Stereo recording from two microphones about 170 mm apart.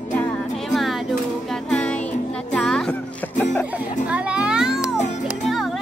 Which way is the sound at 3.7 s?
5° right (ahead or behind).